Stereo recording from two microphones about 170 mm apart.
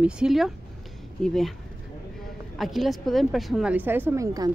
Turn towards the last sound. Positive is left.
turn(degrees=-20)  # may be behind; listen again after turning